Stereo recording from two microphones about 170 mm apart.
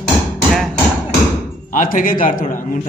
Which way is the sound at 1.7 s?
50° left (ahead or behind).